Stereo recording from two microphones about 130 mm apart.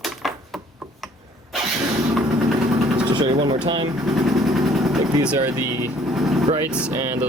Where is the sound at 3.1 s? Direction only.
35° right (ahead or behind).